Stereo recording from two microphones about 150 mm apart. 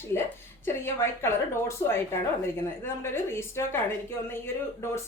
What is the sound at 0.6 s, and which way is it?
A woman's voice, 15° left (ahead or behind).